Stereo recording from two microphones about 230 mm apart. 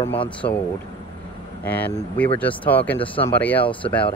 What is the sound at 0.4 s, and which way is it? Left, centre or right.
Speech, centre.